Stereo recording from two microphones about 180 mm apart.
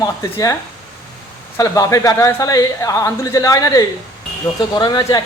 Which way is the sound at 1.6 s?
20° left (ahead or behind).